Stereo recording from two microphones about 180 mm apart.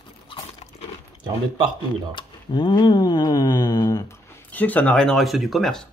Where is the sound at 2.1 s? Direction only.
25° left (ahead or behind).